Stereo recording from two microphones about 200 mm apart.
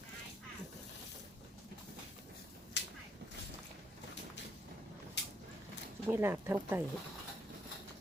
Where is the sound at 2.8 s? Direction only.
60° left (ahead or behind).